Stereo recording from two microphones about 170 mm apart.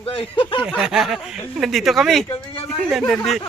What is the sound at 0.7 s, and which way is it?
Speech, centre (ahead or behind).